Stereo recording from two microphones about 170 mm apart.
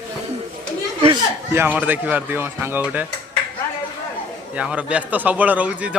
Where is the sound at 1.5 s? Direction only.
10° right (ahead or behind).